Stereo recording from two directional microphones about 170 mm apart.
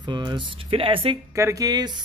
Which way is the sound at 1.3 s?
20° right (ahead or behind).